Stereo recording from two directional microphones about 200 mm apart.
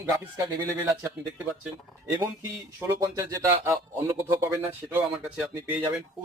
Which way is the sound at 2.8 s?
15° right (ahead or behind).